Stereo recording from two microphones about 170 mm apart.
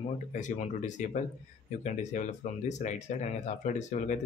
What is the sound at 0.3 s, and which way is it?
Speech, 45° left (ahead or behind).